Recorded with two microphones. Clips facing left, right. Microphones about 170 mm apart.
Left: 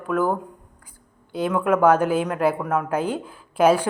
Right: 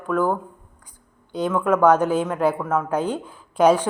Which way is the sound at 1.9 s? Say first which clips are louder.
Even; 10° left (ahead or behind).